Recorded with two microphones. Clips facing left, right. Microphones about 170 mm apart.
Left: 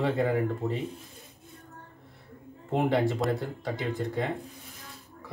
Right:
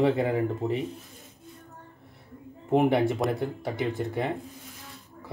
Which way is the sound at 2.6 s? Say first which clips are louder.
Right 3 dB; 20° right (ahead or behind).